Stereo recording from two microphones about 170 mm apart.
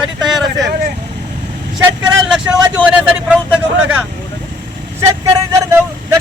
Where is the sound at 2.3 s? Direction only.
10° right (ahead or behind).